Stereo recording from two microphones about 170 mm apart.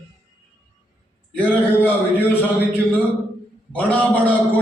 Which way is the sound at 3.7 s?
10° left (ahead or behind).